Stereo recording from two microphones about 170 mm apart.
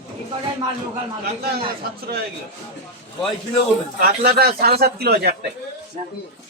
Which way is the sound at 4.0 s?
65° right (ahead or behind).